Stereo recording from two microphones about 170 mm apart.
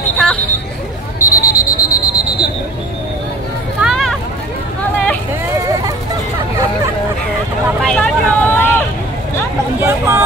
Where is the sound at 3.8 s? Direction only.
Centre (ahead or behind).